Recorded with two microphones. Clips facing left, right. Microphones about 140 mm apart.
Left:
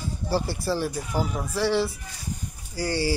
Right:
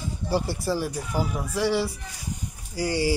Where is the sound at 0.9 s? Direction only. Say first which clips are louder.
Even; 5° right (ahead or behind).